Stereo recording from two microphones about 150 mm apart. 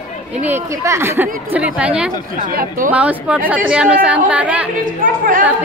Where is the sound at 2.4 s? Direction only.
70° right (ahead or behind).